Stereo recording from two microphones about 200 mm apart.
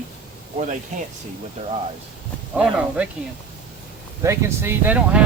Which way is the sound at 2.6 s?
5° right (ahead or behind).